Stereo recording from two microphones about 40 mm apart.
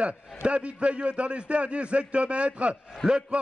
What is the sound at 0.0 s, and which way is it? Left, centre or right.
A man's voice, right.